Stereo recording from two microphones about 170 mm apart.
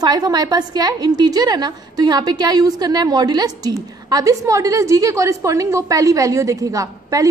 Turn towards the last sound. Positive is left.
turn(degrees=-20)  # may be behind; listen again after turning